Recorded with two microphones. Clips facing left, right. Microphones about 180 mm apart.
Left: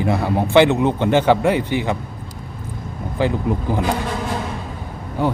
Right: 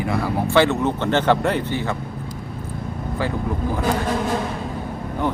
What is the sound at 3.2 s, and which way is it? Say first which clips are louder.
Speech: left 6 dB; 20° left (ahead or behind).